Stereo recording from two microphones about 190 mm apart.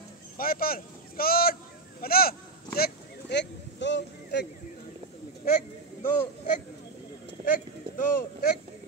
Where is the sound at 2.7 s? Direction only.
60° left (ahead or behind).